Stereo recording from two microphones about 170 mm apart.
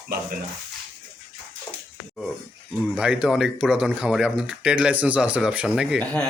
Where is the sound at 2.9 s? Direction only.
5° right (ahead or behind).